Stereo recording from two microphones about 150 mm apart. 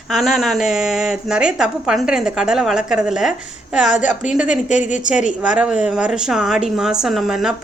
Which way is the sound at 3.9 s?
55° left (ahead or behind).